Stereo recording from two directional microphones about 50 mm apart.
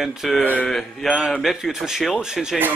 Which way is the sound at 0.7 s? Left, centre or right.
Centre.